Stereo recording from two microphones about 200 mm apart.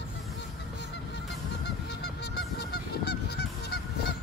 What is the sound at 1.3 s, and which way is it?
Goose, 55° left (ahead or behind).